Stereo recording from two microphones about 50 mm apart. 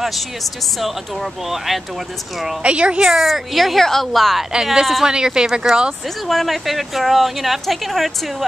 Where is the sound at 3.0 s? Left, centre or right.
Centre.